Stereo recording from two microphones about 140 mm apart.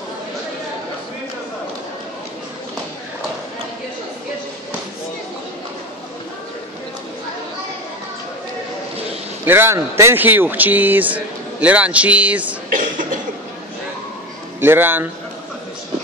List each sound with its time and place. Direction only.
9.5 s speech: 15° right (ahead or behind)
12.7 s cough: 70° right (ahead or behind)
14.6 s speech: 15° right (ahead or behind)